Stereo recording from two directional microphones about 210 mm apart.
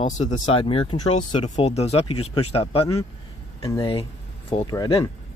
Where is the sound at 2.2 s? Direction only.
90° left.